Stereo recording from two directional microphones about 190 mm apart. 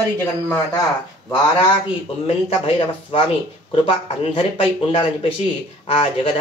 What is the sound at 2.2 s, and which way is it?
Speech, 30° left (ahead or behind).